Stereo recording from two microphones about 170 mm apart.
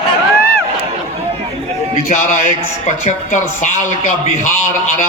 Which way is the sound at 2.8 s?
45° left (ahead or behind).